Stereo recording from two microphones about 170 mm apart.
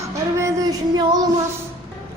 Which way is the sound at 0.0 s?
20° right (ahead or behind).